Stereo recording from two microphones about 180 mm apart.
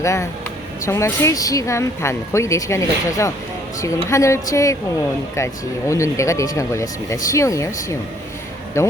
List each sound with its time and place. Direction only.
0.0 s speech: 15° left (ahead or behind)
5.9 s speech: 15° left (ahead or behind)